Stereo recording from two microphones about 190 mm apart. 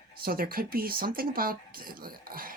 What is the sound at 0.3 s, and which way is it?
Speech, 50° right (ahead or behind).